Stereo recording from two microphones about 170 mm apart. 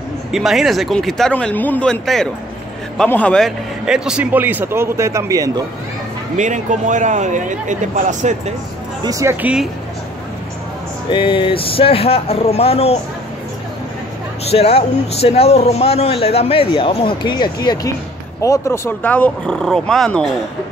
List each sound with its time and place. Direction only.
0.3 s a man's voice: centre (ahead or behind); by 5.5 s 20° right (ahead or behind)
6.3 s speech: 45° right (ahead or behind)
9.0 s a man's voice: 20° right (ahead or behind)
11.1 s speech: 30° left (ahead or behind)
14.5 s speech: 35° left (ahead or behind); by 20.2 s 5° left (ahead or behind)